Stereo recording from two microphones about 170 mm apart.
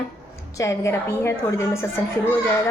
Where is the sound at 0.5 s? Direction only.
20° left (ahead or behind).